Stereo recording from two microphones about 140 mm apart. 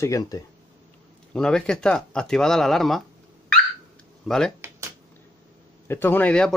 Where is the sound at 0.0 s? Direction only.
25° left (ahead or behind).